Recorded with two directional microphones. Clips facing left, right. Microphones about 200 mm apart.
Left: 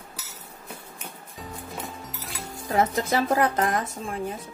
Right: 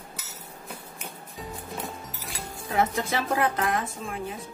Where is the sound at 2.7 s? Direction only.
40° left (ahead or behind).